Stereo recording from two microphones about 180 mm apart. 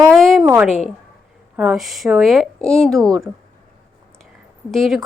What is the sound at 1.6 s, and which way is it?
Speech, 5° right (ahead or behind).